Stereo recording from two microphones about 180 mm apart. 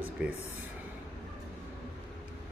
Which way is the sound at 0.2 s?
5° right (ahead or behind).